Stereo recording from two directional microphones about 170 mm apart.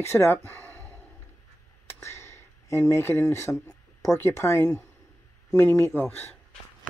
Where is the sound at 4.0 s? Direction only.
15° left (ahead or behind).